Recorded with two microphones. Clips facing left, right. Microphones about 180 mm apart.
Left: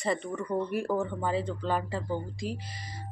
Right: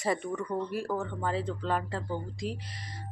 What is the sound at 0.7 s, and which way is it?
Speech, 20° left (ahead or behind).